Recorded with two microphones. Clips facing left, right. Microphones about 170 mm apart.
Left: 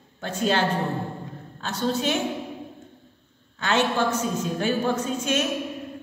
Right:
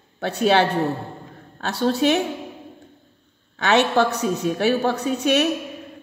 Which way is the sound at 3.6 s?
70° right (ahead or behind).